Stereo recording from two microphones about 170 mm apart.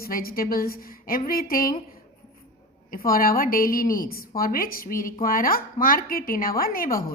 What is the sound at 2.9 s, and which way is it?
A woman's voice, 55° left (ahead or behind).